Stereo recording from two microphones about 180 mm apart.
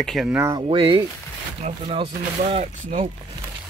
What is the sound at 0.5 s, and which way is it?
Speech, 30° right (ahead or behind).